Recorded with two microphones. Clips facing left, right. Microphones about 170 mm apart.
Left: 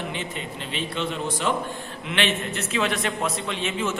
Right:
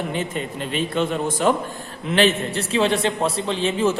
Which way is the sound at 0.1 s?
45° right (ahead or behind).